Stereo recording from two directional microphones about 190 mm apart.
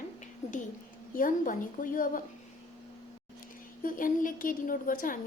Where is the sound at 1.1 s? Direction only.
45° left (ahead or behind).